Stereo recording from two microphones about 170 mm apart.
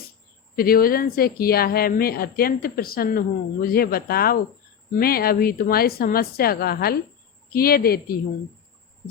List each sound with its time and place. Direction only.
0.5 s speech: 60° left (ahead or behind)